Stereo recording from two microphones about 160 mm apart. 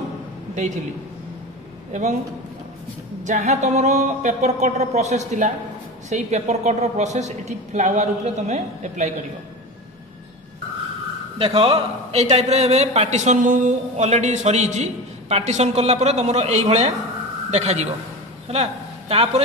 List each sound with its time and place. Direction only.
1.9 s a man's voice: 50° right (ahead or behind)
3.3 s a man's voice: 50° right (ahead or behind)
11.3 s a man's voice: 35° right (ahead or behind)